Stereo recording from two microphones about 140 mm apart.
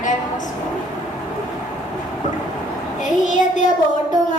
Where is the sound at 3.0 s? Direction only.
65° left (ahead or behind).